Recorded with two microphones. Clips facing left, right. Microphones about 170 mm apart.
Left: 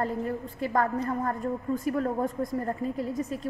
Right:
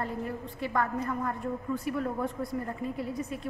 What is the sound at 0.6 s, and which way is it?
A woman's voice, 40° left (ahead or behind).